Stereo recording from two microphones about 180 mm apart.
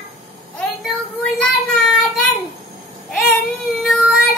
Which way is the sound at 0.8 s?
Centre (ahead or behind).